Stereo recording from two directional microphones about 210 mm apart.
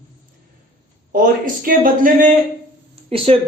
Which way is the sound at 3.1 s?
25° right (ahead or behind).